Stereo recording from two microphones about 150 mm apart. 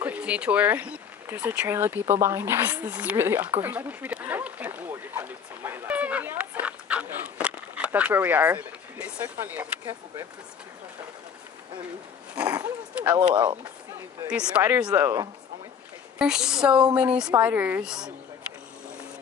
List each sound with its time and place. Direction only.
0.0 s a sound: 10° right (ahead or behind)
13.3 s speech: 30° right (ahead or behind)
14.3 s a woman's voice: 5° right (ahead or behind)
16.2 s a woman's voice: 5° right (ahead or behind)